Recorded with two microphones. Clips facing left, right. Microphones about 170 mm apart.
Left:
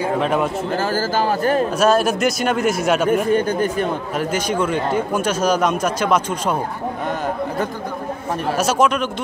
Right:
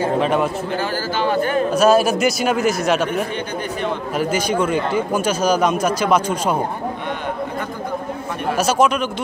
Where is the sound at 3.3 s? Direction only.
45° left (ahead or behind).